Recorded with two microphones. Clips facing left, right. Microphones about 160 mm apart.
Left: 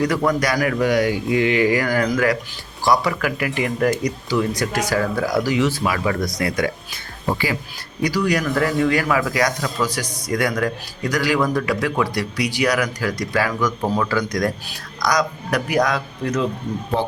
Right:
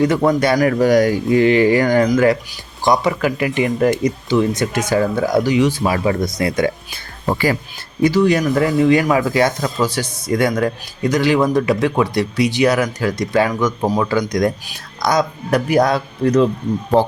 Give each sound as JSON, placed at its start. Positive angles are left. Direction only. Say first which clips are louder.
{"t": 0.0, "sound": "a man's voice", "louder": "right 5 dB", "side_deg": -25}
{"t": 0.6, "sound": "a man's voice", "louder": "right 5 dB", "side_deg": -35}
{"t": 8.0, "sound": "a man's voice", "louder": "right 6 dB", "side_deg": -25}